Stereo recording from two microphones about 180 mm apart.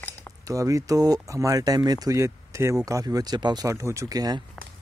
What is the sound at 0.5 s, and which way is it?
Speech, 15° right (ahead or behind).